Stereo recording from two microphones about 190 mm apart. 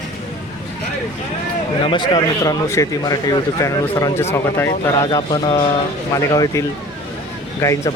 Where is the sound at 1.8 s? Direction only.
25° left (ahead or behind).